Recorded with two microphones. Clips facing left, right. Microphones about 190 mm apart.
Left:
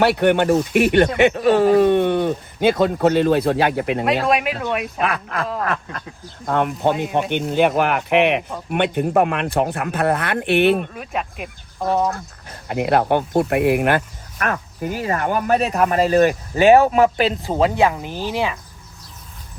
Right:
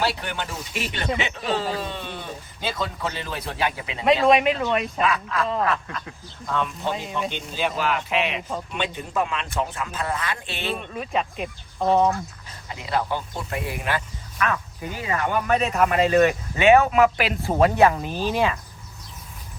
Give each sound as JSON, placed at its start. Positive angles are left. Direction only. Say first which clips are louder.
{"t": 0.0, "sound": "speech", "louder": "left 12 dB", "side_deg": 65}
{"t": 4.2, "sound": "speech", "louder": "right 1 dB", "side_deg": 0}
{"t": 4.9, "sound": "speech", "louder": "left 1 dB", "side_deg": 60}
{"t": 10.9, "sound": "speech", "louder": "right 1 dB", "side_deg": 5}
{"t": 12.5, "sound": "speech", "louder": "left 13 dB", "side_deg": 65}